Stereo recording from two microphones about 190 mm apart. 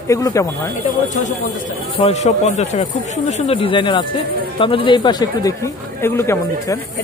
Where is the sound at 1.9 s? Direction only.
35° left (ahead or behind); by 6.7 s 15° left (ahead or behind).